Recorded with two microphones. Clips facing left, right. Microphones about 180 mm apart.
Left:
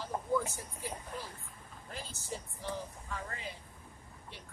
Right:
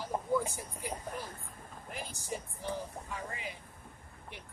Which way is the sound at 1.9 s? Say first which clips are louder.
Right 2 dB; 15° right (ahead or behind).